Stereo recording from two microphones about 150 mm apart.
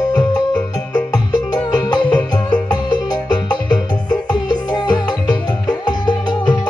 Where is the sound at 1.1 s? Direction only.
25° left (ahead or behind).